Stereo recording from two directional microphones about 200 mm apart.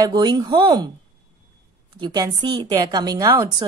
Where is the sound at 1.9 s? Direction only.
20° right (ahead or behind).